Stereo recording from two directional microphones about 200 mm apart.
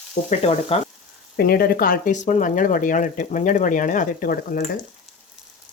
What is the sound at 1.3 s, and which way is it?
Speech, 50° left (ahead or behind).